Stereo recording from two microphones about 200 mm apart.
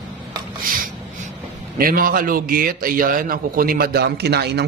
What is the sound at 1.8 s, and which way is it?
A man's voice, 45° right (ahead or behind).